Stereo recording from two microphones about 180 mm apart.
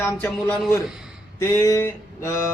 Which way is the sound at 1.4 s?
20° left (ahead or behind).